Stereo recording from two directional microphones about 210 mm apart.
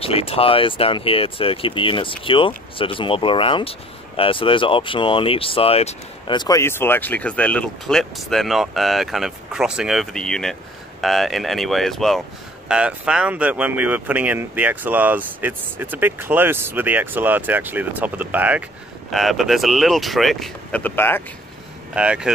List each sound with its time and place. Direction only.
0.0 s speech: 25° left (ahead or behind); by 21.2 s 10° left (ahead or behind)
21.9 s speech: 5° right (ahead or behind)